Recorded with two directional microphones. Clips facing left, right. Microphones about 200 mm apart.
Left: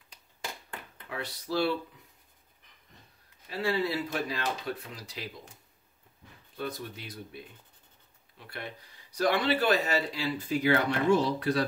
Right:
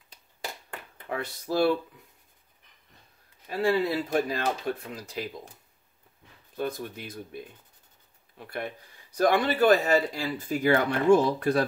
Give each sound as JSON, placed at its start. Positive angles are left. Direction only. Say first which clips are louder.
{"t": 1.0, "sound": "speech", "louder": "right 5 dB", "side_deg": -50}
{"t": 3.4, "sound": "speech", "louder": "right 5 dB", "side_deg": -50}
{"t": 6.5, "sound": "speech", "louder": "right 5 dB", "side_deg": -50}